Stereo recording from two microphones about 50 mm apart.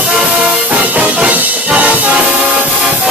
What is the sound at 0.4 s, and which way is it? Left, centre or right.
Music, right.